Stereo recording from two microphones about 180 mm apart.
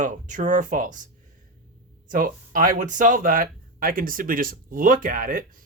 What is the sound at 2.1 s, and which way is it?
Speech, 50° right (ahead or behind).